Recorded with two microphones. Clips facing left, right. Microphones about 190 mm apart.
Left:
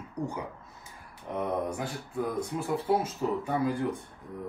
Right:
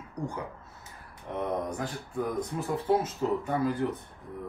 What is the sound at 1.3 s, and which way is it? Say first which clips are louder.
Speech: left 1 dB; 10° left (ahead or behind).